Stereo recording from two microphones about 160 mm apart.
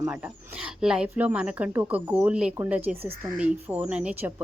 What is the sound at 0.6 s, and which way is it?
A woman's voice, 5° right (ahead or behind).